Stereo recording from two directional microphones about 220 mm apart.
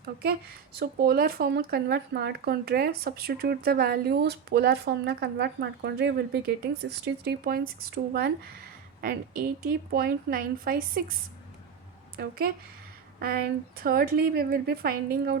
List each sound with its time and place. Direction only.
0.0 s a woman's voice: 45° right (ahead or behind)
12.1 s speech: 45° right (ahead or behind)